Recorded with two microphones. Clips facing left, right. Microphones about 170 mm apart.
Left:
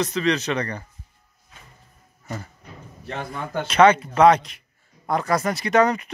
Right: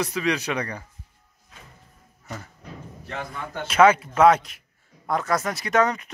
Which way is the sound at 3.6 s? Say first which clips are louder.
Left 1 dB; 5° right (ahead or behind).